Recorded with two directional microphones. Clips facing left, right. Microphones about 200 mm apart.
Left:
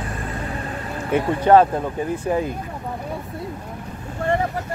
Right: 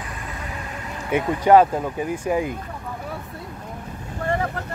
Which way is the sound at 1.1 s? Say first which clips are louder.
Left 1 dB; 10° right (ahead or behind).